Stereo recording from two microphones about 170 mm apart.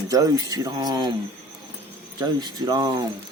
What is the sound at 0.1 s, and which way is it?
Speech, 20° right (ahead or behind).